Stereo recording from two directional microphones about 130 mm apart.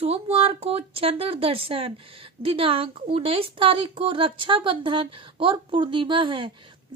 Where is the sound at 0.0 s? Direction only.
50° right (ahead or behind).